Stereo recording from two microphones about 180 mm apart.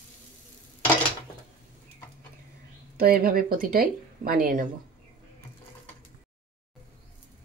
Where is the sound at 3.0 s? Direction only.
55° right (ahead or behind).